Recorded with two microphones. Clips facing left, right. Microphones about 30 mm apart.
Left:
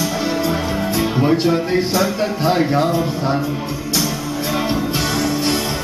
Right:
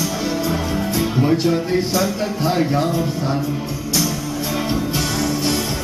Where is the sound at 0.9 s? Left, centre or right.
Centre.